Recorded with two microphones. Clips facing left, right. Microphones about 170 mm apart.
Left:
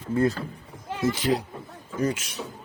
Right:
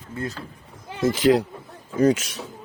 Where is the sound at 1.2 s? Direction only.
90° right.